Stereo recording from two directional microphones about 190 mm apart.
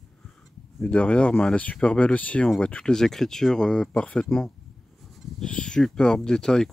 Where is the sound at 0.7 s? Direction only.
5° left (ahead or behind).